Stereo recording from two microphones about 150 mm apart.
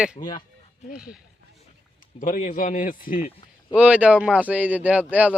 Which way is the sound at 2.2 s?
55° left (ahead or behind).